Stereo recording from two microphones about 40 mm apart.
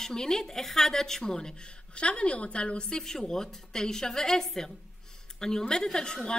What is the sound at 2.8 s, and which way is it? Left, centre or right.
A woman's voice, centre.